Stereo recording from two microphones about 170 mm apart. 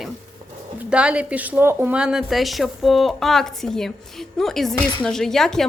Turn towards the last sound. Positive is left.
turn(degrees=0)  # may be behind; listen again after turning